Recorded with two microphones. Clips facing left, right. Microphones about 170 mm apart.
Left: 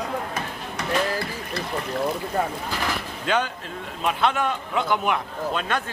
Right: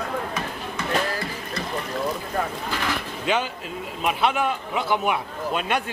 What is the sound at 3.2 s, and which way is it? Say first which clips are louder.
A man's voice: left 1 dB; 10° right (ahead or behind).